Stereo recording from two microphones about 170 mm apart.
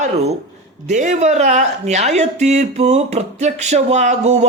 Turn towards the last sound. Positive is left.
turn(degrees=-40)  # may be behind; listen again after turning